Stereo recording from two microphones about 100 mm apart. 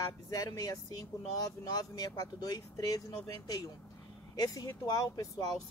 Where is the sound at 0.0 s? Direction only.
40° left (ahead or behind).